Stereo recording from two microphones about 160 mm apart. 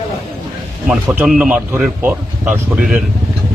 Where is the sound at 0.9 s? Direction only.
5° right (ahead or behind).